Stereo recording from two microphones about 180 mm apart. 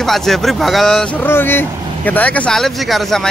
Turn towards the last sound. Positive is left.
turn(degrees=0)  # may be behind; listen again after turning